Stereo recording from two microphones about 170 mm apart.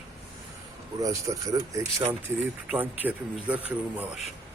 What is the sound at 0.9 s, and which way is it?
Speech, 20° right (ahead or behind).